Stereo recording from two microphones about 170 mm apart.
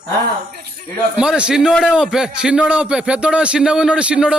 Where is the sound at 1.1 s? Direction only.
5° right (ahead or behind).